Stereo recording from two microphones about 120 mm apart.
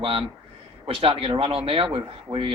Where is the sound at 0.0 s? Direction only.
50° right (ahead or behind).